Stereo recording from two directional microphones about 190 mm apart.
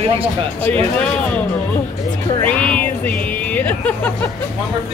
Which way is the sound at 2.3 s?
5° left (ahead or behind).